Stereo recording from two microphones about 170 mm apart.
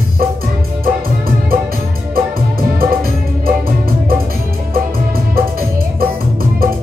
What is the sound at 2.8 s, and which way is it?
Music, 60° right (ahead or behind).